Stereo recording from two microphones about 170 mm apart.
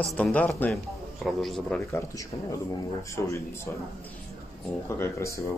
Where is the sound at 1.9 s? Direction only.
15° left (ahead or behind).